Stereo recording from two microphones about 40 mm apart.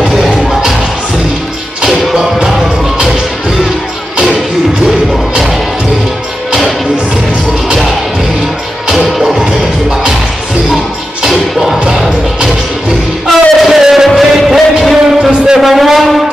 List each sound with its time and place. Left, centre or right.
2.4 s music: centre
8.8 s music: centre
9.4 s music: centre
11.2 s music: centre
13.3 s music: centre
15.3 s a sound: centre
15.6 s a sound: centre